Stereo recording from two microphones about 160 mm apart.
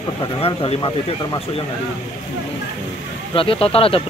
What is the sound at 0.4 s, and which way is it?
Speech, 35° left (ahead or behind).